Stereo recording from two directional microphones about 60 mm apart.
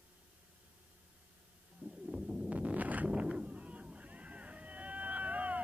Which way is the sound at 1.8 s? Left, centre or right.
Centre.